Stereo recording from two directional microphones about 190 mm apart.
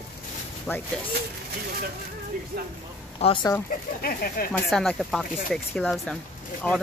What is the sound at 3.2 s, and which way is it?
Speech, 35° left (ahead or behind).